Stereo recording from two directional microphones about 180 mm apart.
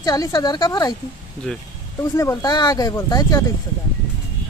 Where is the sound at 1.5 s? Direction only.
5° left (ahead or behind).